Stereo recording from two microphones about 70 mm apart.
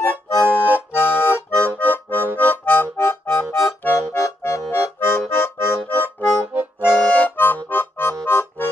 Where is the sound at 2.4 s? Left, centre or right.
Left.